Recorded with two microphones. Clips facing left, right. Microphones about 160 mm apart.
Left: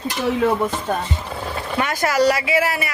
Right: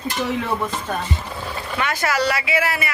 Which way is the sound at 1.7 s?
40° left (ahead or behind).